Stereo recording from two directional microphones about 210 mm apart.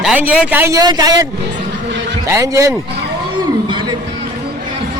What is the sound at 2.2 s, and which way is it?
Speech, 15° right (ahead or behind).